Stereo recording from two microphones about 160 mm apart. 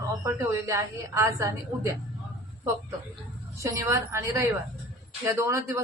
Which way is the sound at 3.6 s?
20° right (ahead or behind).